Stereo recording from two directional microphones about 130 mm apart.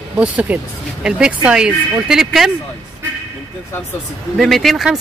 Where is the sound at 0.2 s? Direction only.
10° right (ahead or behind).